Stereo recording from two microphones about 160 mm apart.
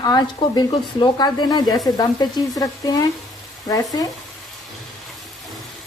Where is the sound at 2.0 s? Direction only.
25° left (ahead or behind).